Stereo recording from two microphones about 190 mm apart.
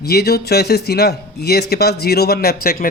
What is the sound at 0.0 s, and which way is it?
A man's voice, 55° left (ahead or behind).